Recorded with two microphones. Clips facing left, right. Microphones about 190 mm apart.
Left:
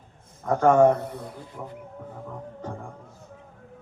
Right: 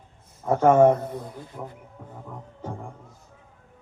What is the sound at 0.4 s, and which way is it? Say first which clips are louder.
A man's voice: right 1 dB; 5° right (ahead or behind).